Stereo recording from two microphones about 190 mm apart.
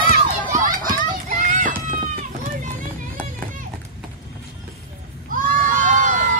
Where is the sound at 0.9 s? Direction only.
45° right (ahead or behind).